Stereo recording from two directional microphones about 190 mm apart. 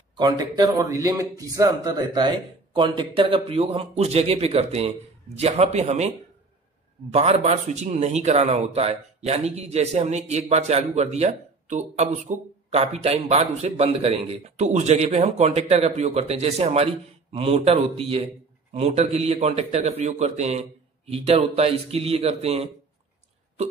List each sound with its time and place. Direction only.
0.2 s speech: 20° right (ahead or behind)